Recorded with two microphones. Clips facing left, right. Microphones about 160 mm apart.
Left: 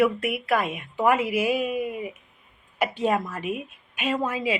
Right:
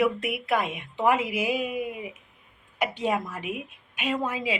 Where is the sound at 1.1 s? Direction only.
15° right (ahead or behind).